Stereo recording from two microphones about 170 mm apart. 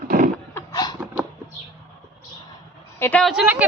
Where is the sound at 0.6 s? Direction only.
25° left (ahead or behind).